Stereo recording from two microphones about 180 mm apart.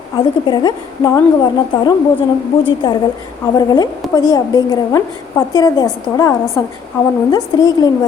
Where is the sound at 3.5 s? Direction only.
20° left (ahead or behind).